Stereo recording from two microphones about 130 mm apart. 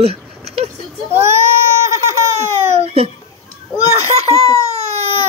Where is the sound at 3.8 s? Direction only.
50° right (ahead or behind).